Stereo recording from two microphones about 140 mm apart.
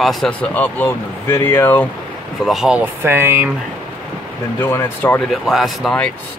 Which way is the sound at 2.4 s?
Centre (ahead or behind).